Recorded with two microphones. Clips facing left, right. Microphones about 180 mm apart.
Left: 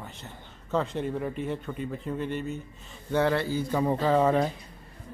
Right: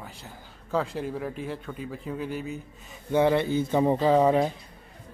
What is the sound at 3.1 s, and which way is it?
A man's voice, 15° right (ahead or behind).